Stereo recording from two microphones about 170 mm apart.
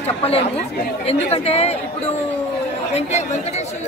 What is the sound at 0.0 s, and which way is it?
Chatter, 35° left (ahead or behind).